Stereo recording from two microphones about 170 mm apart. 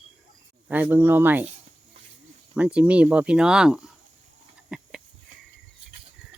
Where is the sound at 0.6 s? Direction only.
10° right (ahead or behind).